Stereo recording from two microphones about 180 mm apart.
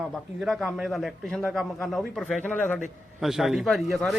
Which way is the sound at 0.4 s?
Centre (ahead or behind).